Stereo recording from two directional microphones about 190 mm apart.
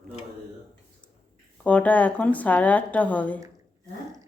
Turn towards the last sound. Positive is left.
turn(degrees=10)  # may be behind; listen again after turning